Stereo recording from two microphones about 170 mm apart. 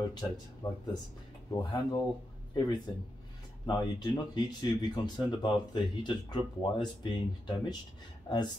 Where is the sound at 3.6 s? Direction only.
25° left (ahead or behind).